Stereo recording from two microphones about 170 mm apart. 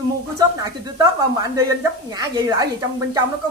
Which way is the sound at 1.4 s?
20° right (ahead or behind).